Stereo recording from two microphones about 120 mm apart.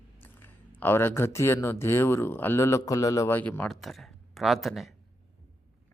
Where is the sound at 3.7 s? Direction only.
Centre (ahead or behind).